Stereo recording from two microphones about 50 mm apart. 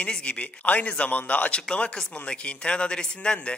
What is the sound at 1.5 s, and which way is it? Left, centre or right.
A man's voice, centre.